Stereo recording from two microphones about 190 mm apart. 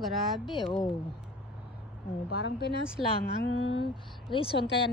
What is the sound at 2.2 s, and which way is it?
Speech, 75° left (ahead or behind).